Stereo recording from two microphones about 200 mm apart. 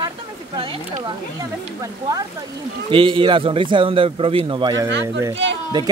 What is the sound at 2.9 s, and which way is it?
Speech, 25° right (ahead or behind).